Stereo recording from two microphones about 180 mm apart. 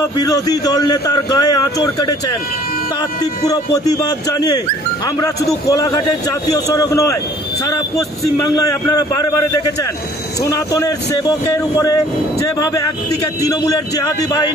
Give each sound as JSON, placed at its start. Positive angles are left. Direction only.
{"t": 0.3, "sound": "speech", "side_deg": 20}
{"t": 5.7, "sound": "speech", "side_deg": 20}